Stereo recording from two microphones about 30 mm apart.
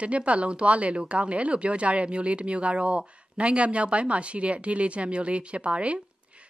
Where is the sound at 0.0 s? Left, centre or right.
Right.